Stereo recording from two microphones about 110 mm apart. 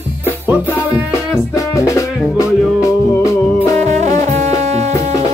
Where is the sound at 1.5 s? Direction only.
30° left (ahead or behind).